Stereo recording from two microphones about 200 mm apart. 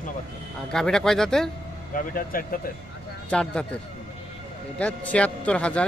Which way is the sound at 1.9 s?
45° left (ahead or behind).